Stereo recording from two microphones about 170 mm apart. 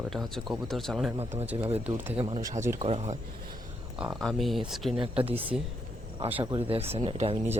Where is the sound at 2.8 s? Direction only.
40° right (ahead or behind).